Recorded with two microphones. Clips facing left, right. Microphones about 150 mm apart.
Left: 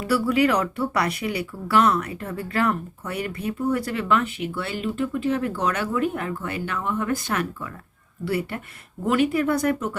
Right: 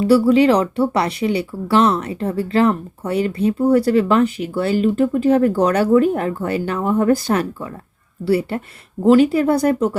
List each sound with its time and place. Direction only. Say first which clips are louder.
0.0 s speech: right 8 dB; 30° right (ahead or behind)